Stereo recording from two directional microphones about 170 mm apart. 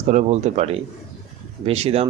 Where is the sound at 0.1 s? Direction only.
45° right (ahead or behind).